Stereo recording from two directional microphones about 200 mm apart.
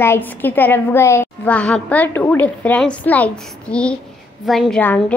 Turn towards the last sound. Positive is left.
turn(degrees=5)  # may be behind; listen again after turning